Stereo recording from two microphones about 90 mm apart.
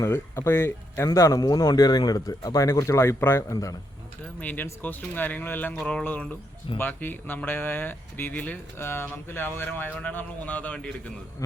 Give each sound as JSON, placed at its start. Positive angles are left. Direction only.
{"t": 0.0, "sound": "speech", "side_deg": 30}
{"t": 3.5, "sound": "speech", "side_deg": 40}
{"t": 4.4, "sound": "speech", "side_deg": 20}